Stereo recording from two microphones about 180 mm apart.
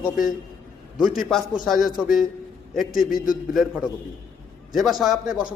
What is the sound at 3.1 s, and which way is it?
Speech, 50° left (ahead or behind).